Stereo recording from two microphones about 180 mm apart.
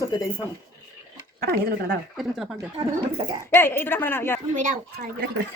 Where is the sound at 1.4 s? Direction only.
60° right (ahead or behind).